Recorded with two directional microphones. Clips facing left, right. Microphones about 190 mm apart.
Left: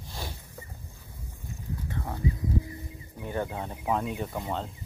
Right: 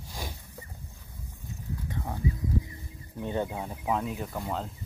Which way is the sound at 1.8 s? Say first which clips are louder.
Even; 15° right (ahead or behind).